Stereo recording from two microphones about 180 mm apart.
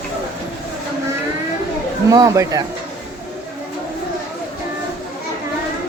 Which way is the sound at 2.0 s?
20° right (ahead or behind).